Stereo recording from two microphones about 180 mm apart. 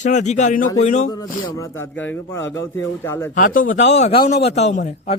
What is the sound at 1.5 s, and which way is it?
Speech, 10° left (ahead or behind).